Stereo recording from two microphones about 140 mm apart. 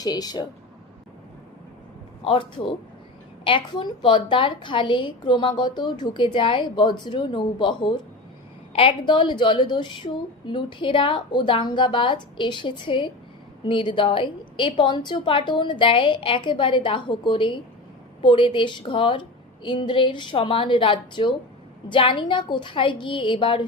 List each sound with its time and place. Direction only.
0.0 s speech: 30° left (ahead or behind)
2.2 s a woman's voice: 35° left (ahead or behind)